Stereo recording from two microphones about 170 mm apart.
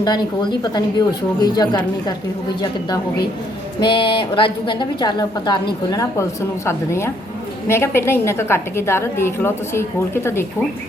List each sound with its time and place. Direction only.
0.0 s a woman's voice: 25° left (ahead or behind)
3.8 s a woman's voice: 30° left (ahead or behind)